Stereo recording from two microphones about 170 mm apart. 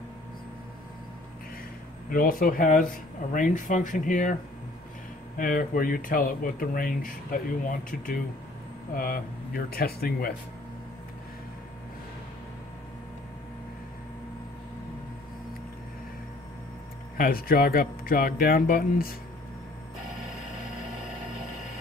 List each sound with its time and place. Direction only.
2.0 s speech: 55° left (ahead or behind)
5.4 s speech: 55° left (ahead or behind)
8.9 s speech: 55° left (ahead or behind)
17.2 s speech: 60° left (ahead or behind)